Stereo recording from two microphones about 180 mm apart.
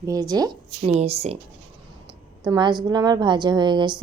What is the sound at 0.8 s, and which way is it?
Speech, 35° right (ahead or behind).